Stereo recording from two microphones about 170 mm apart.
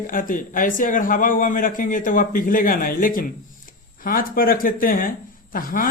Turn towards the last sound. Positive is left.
turn(degrees=55)  # may be behind; listen again after turning